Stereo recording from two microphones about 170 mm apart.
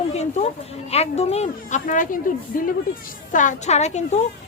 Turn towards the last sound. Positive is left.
turn(degrees=40)  # may be behind; listen again after turning